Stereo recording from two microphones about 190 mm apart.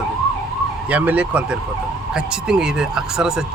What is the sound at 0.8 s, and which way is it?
Speech, 5° right (ahead or behind).